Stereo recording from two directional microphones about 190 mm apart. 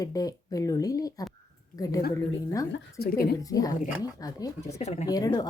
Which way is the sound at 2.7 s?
55° left (ahead or behind).